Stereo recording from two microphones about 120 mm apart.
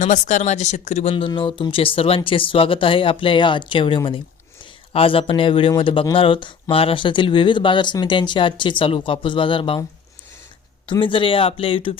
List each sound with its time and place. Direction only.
0.0 s speech: 90° left; by 1.1 s 70° left (ahead or behind)
1.4 s speech: 45° left (ahead or behind)
11.0 s speech: 45° left (ahead or behind)